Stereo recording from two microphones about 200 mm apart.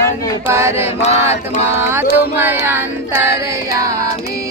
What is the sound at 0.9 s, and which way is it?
Chant, 35° left (ahead or behind).